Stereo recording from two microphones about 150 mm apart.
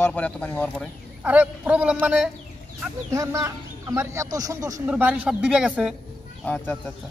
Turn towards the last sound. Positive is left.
turn(degrees=10)  # may be behind; listen again after turning